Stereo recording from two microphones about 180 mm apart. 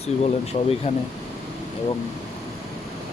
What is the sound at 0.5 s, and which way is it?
Speech, 40° left (ahead or behind).